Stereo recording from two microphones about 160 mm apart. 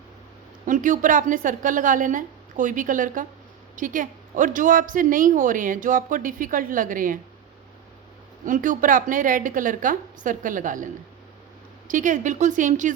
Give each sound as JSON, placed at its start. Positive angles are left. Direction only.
{"t": 0.6, "sound": "a woman's voice", "side_deg": -55}
{"t": 8.4, "sound": "a woman's voice", "side_deg": -55}
{"t": 11.9, "sound": "speech", "side_deg": -55}